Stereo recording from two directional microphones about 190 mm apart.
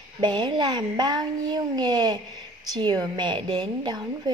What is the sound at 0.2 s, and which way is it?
A child's voice, 25° right (ahead or behind).